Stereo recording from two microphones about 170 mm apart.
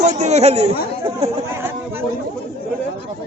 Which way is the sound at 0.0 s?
40° right (ahead or behind).